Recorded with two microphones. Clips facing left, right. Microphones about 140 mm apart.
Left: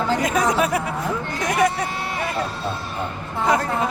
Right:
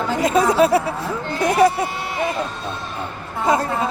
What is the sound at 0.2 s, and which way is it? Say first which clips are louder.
Speech: right 4 dB; 25° right (ahead or behind).